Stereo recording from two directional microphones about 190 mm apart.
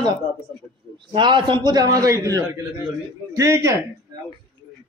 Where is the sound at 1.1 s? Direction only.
25° right (ahead or behind).